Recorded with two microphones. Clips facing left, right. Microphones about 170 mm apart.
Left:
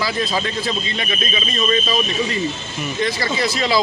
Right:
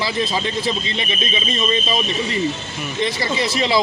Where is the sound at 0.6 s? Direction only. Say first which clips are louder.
Right 1 dB; 25° right (ahead or behind).